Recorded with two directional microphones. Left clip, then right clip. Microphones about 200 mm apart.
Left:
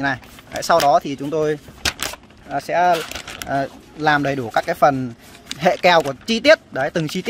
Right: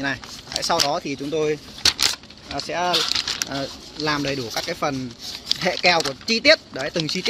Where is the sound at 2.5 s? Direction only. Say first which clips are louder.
Left 5 dB; 60° left (ahead or behind).